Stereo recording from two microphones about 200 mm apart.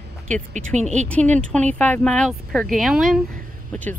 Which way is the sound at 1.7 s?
5° left (ahead or behind).